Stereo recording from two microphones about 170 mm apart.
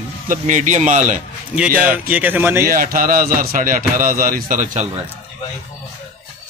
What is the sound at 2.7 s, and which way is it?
A man's voice, 55° right (ahead or behind).